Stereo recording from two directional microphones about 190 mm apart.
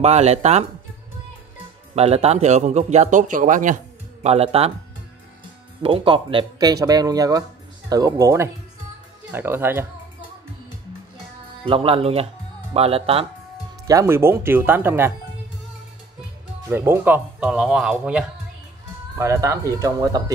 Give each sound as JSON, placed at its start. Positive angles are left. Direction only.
{"t": 0.0, "sound": "a man's voice", "side_deg": -35}
{"t": 2.0, "sound": "a man's voice", "side_deg": -35}
{"t": 5.8, "sound": "speech", "side_deg": -30}
{"t": 11.6, "sound": "a man's voice", "side_deg": -30}
{"t": 13.8, "sound": "speech", "side_deg": -15}
{"t": 16.6, "sound": "speech", "side_deg": -10}
{"t": 19.1, "sound": "speech", "side_deg": -15}